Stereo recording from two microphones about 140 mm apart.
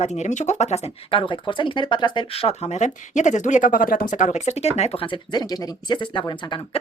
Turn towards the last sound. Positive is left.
turn(degrees=40)  # may be behind; listen again after turning